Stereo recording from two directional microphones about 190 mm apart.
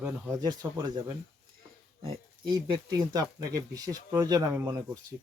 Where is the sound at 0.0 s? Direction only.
20° right (ahead or behind).